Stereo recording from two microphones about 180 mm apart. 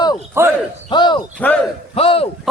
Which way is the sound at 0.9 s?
25° left (ahead or behind).